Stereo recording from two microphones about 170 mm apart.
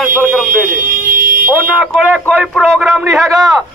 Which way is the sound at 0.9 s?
55° right (ahead or behind).